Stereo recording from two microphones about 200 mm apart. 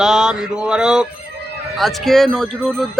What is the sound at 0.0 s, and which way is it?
A man's voice, centre (ahead or behind).